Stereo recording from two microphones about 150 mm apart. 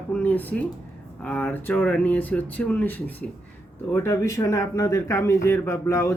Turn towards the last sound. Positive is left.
turn(degrees=20)  # may be behind; listen again after turning